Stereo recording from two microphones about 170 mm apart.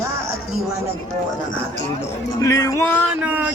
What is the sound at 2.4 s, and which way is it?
Speech, 20° left (ahead or behind).